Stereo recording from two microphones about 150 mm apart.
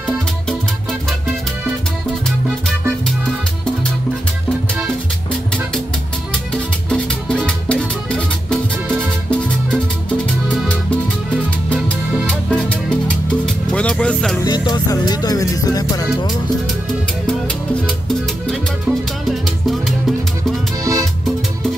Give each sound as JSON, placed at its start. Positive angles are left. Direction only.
{"t": 6.9, "sound": "music", "side_deg": 5}
{"t": 11.7, "sound": "music", "side_deg": 10}
{"t": 14.4, "sound": "music", "side_deg": 25}
{"t": 17.3, "sound": "music", "side_deg": 5}
{"t": 20.8, "sound": "music", "side_deg": -25}